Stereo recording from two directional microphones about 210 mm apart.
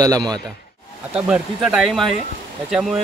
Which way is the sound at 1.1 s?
5° right (ahead or behind).